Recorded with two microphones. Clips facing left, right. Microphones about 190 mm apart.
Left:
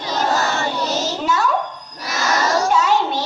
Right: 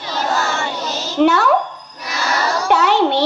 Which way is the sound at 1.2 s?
65° right (ahead or behind).